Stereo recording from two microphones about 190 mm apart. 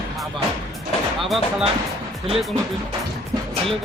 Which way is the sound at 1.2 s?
Centre (ahead or behind).